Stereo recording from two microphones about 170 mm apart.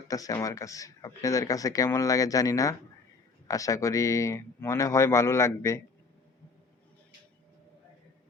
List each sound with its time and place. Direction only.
0.1 s speech: 20° left (ahead or behind)